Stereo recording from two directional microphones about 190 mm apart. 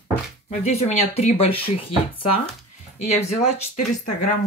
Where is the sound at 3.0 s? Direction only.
35° left (ahead or behind).